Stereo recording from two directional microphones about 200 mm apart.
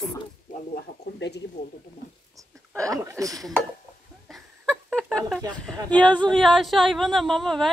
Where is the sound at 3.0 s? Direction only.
15° right (ahead or behind).